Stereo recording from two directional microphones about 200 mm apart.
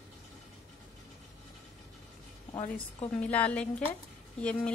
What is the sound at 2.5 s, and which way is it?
Speech, 30° left (ahead or behind).